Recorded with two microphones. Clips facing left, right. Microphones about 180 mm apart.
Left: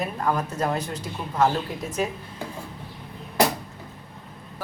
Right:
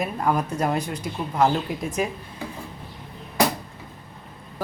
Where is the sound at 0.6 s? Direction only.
15° right (ahead or behind).